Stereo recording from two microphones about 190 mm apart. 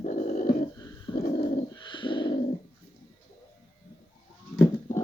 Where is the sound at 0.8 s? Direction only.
20° left (ahead or behind).